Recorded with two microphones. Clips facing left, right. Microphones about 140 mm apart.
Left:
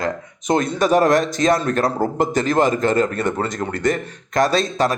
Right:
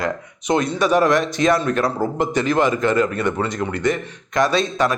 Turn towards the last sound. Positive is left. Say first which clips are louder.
# even
turn(degrees=35)  # may be behind; listen again after turning